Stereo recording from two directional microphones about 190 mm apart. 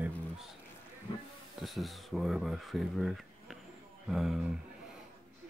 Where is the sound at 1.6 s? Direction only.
Centre (ahead or behind).